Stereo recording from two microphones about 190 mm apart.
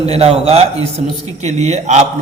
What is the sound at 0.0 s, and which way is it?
A man's voice, 30° right (ahead or behind).